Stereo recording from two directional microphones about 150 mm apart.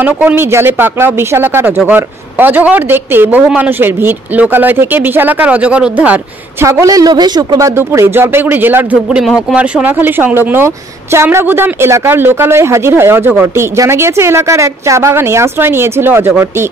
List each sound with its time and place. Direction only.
0.0 s speech: 10° right (ahead or behind)
6.7 s speech: 20° right (ahead or behind)
9.2 s speech: centre (ahead or behind)